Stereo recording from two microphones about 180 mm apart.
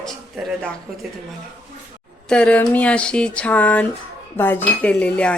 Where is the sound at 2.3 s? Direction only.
5° left (ahead or behind).